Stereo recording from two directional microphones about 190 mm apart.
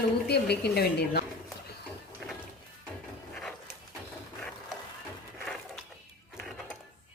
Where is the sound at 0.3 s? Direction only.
60° left (ahead or behind).